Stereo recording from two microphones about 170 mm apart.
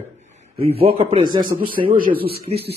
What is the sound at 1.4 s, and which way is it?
Speech, 55° right (ahead or behind).